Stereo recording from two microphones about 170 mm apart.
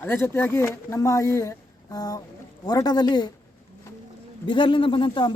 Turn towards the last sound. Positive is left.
turn(degrees=30)  # may be behind; listen again after turning